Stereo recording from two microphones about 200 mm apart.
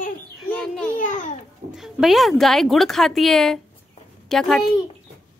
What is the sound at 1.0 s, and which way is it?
Babbling, 40° left (ahead or behind).